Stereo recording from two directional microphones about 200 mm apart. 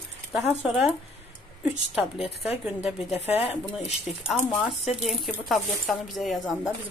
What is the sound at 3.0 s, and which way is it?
Speech, 30° left (ahead or behind).